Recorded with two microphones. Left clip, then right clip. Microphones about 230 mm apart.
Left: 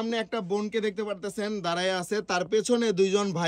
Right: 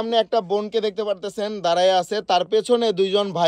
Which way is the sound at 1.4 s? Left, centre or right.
Centre.